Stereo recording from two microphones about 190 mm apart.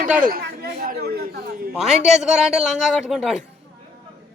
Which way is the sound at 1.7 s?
5° right (ahead or behind).